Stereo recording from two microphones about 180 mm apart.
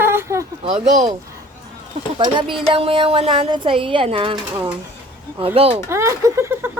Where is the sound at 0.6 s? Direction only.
40° right (ahead or behind).